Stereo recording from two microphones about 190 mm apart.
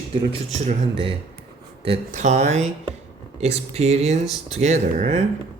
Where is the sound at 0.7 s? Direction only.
30° right (ahead or behind).